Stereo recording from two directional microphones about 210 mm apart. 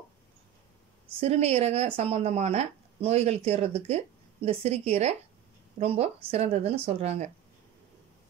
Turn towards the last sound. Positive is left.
turn(degrees=-30)  # may be behind; listen again after turning